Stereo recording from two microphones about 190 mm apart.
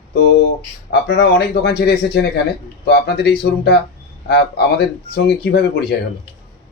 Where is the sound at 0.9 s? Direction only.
65° left (ahead or behind).